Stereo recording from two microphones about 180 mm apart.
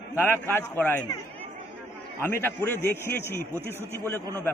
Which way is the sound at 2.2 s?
10° left (ahead or behind).